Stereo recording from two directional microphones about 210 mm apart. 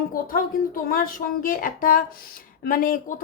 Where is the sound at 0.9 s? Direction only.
45° left (ahead or behind).